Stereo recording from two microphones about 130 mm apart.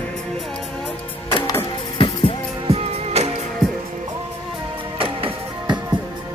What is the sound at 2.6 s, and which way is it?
Music, 50° right (ahead or behind).